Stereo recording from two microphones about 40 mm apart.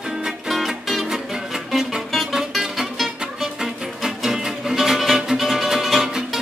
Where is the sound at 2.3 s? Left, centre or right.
Centre.